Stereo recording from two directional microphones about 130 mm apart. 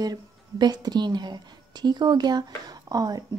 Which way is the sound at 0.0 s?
30° right (ahead or behind).